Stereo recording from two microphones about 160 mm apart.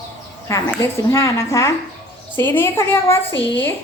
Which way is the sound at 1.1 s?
20° left (ahead or behind).